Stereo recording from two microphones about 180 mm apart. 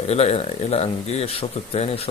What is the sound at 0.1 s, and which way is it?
Speech, 35° left (ahead or behind).